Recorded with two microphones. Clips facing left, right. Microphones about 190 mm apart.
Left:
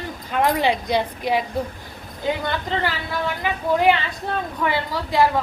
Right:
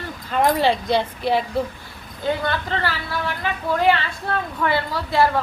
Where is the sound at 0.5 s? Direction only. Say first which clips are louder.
Right 1 dB; 15° left (ahead or behind).